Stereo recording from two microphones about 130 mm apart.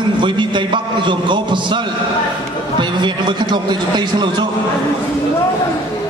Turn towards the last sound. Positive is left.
turn(degrees=-35)  # may be behind; listen again after turning